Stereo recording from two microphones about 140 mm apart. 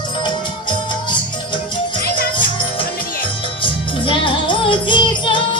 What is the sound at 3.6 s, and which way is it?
Music, 35° left (ahead or behind).